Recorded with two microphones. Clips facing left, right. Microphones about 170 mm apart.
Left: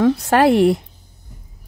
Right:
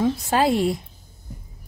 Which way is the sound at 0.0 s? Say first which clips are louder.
Left 6 dB; 70° left (ahead or behind).